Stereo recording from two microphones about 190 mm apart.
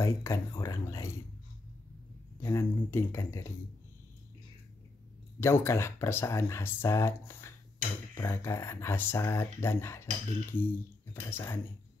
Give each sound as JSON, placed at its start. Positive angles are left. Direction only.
{"t": 0.0, "sound": "speech", "side_deg": 15}
{"t": 2.4, "sound": "speech", "side_deg": 15}
{"t": 5.4, "sound": "speech", "side_deg": 15}